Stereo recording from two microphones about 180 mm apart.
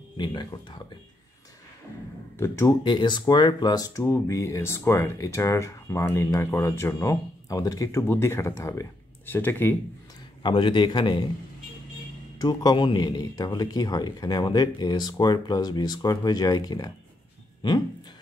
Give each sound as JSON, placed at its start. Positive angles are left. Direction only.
{"t": 0.2, "sound": "a man's voice", "side_deg": 25}
{"t": 2.3, "sound": "speech", "side_deg": 15}
{"t": 10.4, "sound": "a man's voice", "side_deg": 25}
{"t": 12.4, "sound": "a man's voice", "side_deg": 20}